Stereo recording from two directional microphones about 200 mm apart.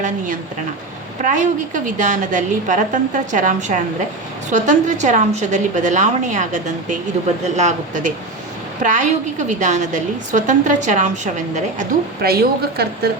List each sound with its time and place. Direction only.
1.2 s a woman's voice: 40° right (ahead or behind)
12.2 s a woman's voice: 50° right (ahead or behind)